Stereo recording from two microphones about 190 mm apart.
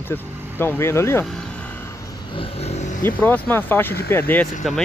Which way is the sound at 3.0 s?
10° left (ahead or behind).